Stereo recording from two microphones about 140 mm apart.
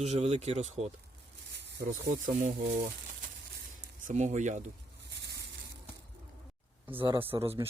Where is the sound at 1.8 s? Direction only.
70° right (ahead or behind).